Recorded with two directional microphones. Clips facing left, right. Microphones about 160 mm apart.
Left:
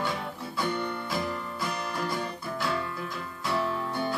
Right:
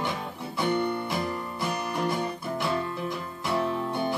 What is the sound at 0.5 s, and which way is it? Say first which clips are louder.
Music: right 5 dB; 20° right (ahead or behind).